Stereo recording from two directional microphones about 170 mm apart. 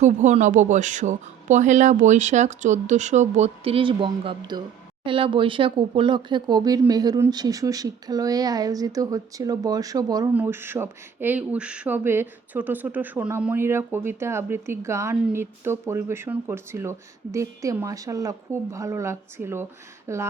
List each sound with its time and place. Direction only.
0.0 s speech: 45° right (ahead or behind); by 20.2 s 15° right (ahead or behind)